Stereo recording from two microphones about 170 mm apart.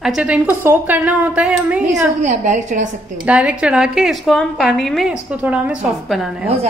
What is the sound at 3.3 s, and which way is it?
A woman's voice, 5° right (ahead or behind).